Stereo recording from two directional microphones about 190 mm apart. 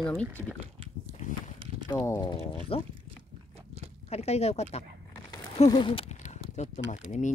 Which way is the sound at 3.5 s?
30° right (ahead or behind).